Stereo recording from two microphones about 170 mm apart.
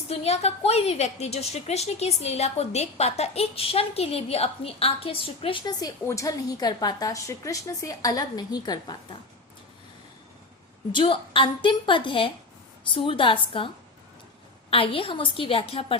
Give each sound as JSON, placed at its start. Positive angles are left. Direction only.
{"t": 0.1, "sound": "a woman's voice", "side_deg": 40}
{"t": 10.9, "sound": "a woman's voice", "side_deg": 30}
{"t": 14.7, "sound": "a woman's voice", "side_deg": 30}